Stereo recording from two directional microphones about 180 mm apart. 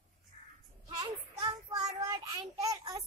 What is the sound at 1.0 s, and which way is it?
Child singing, 25° right (ahead or behind).